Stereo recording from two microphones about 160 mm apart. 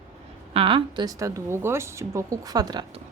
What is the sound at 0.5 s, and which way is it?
A woman's voice, 35° right (ahead or behind).